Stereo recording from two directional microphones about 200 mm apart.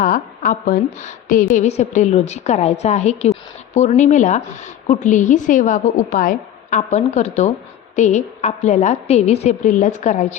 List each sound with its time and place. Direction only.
0.0 s a woman's voice: 45° left (ahead or behind)